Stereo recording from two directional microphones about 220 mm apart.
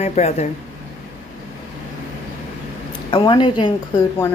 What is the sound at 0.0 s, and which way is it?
Speech, 30° left (ahead or behind).